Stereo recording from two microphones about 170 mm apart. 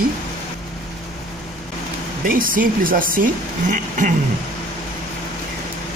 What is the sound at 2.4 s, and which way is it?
Speech, 55° right (ahead or behind).